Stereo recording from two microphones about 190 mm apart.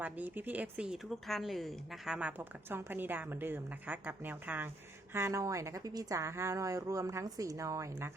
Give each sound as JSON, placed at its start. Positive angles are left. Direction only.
{"t": 0.0, "sound": "a woman's voice", "side_deg": -10}